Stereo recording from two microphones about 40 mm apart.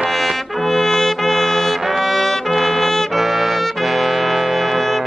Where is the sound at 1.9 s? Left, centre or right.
Centre.